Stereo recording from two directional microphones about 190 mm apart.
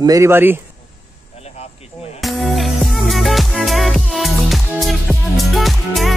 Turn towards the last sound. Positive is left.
turn(degrees=0)  # may be behind; listen again after turning